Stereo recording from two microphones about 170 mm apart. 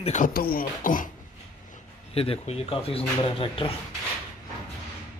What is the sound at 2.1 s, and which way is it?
Speech, 35° left (ahead or behind).